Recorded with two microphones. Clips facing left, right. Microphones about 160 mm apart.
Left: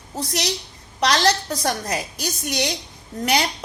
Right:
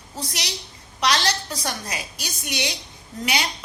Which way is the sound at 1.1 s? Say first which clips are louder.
Left 4 dB; 55° left (ahead or behind).